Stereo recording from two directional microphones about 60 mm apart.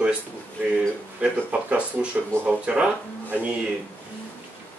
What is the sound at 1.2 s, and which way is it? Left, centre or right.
Speech, centre.